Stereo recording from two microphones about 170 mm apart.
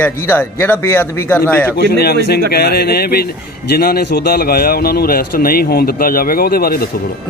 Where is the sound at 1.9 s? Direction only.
65° left (ahead or behind).